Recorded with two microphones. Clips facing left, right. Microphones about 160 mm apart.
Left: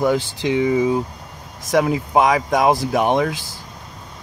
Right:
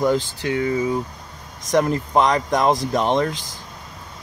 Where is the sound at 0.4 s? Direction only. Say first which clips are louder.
Left 4 dB; 15° left (ahead or behind).